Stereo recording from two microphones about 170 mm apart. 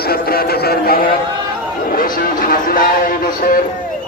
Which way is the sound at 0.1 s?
65° left (ahead or behind).